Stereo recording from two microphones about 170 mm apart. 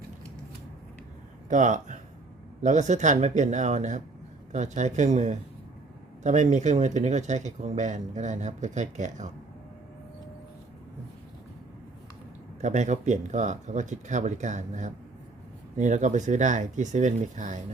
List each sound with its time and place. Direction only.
1.5 s speech: 50° right (ahead or behind)
12.6 s speech: 45° right (ahead or behind)